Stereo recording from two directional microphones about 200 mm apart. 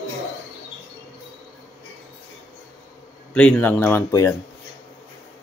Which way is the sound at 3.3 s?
5° left (ahead or behind).